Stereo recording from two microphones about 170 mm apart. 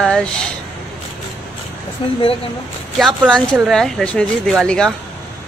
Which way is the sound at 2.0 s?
30° left (ahead or behind).